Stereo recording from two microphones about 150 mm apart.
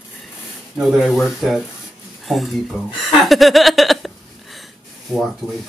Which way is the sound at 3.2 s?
Centre (ahead or behind).